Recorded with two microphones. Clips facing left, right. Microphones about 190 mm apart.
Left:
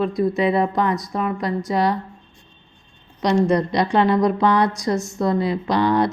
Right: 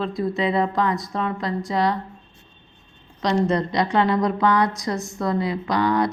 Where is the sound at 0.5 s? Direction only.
20° left (ahead or behind).